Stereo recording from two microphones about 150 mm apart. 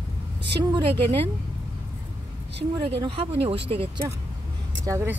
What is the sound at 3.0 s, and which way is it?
Speech, 35° right (ahead or behind).